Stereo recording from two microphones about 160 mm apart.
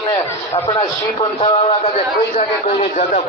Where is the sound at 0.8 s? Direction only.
45° left (ahead or behind).